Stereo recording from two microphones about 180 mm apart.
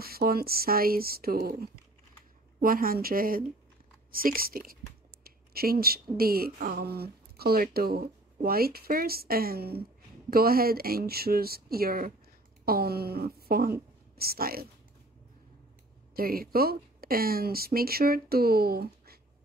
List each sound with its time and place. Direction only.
0.0 s speech: 55° right (ahead or behind)
5.2 s a sound: 55° right (ahead or behind)
6.1 s speech: 55° right (ahead or behind)
16.2 s speech: 55° right (ahead or behind)